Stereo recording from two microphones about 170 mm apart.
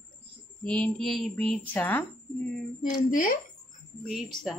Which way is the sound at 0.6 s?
5° left (ahead or behind).